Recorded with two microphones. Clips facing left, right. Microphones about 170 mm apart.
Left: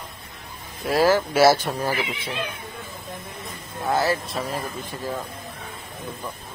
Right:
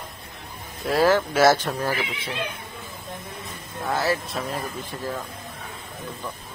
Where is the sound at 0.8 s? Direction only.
5° left (ahead or behind).